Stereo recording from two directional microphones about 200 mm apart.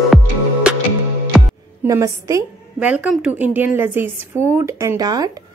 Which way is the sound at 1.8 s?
15° right (ahead or behind).